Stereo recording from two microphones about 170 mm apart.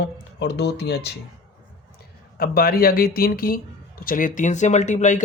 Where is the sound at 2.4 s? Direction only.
60° left (ahead or behind).